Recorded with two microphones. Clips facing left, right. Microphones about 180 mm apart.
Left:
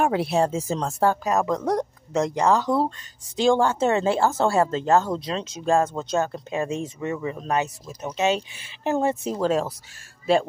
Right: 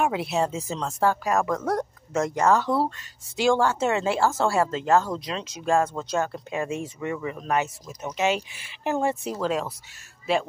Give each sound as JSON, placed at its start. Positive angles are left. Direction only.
{"t": 0.0, "sound": "speech", "side_deg": 35}
{"t": 0.4, "sound": "speech", "side_deg": 45}
{"t": 0.8, "sound": "speech", "side_deg": 35}
{"t": 1.2, "sound": "speech", "side_deg": 20}
{"t": 3.8, "sound": "speech", "side_deg": 30}
{"t": 7.6, "sound": "speech", "side_deg": 20}
{"t": 10.2, "sound": "speech", "side_deg": 30}